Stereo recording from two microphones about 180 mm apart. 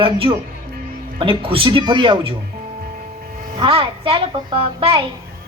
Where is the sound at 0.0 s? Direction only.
30° right (ahead or behind).